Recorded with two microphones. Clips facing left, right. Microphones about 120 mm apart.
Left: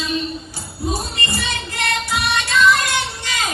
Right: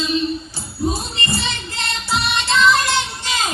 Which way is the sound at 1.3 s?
25° right (ahead or behind).